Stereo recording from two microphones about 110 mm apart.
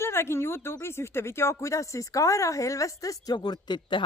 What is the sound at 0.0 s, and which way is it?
Speech, 25° left (ahead or behind).